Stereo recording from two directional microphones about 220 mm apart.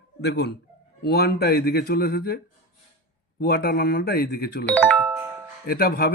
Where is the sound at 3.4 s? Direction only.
45° left (ahead or behind).